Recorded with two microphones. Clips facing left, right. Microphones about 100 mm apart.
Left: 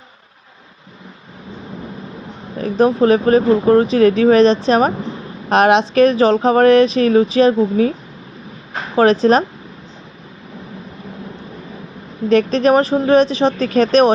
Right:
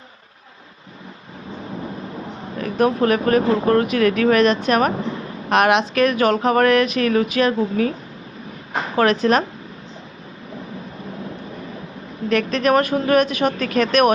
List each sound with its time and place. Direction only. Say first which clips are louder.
2.6 s speech: left 4 dB; 30° left (ahead or behind)
9.0 s speech: left 5 dB; 35° left (ahead or behind)
12.3 s speech: left 5 dB; 35° left (ahead or behind)